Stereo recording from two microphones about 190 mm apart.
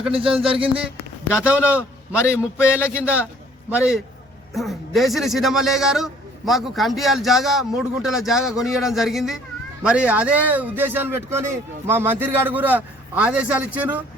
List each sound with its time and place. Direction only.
0.1 s speech: 30° right (ahead or behind)
1.5 s a man's voice: 5° right (ahead or behind)